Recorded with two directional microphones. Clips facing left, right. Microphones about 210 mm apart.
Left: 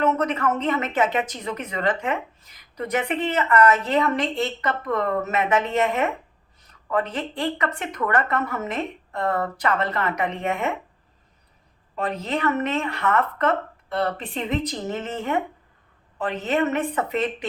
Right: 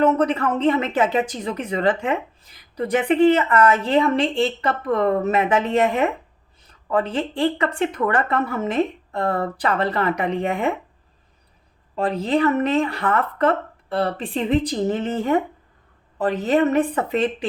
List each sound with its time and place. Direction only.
0.0 s speech: 30° right (ahead or behind)
11.9 s speech: 30° right (ahead or behind)